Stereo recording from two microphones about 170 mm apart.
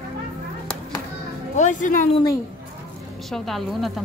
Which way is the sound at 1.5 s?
45° left (ahead or behind).